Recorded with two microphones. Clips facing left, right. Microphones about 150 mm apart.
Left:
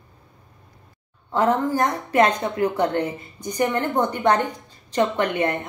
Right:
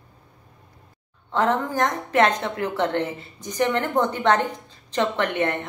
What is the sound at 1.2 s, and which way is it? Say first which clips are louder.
A woman's voice: left 2 dB; 10° left (ahead or behind).